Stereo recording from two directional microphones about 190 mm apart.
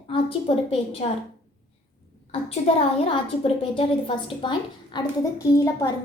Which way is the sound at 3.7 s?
30° left (ahead or behind).